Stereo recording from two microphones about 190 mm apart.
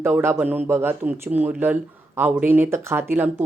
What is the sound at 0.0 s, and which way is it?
Speech, 10° right (ahead or behind).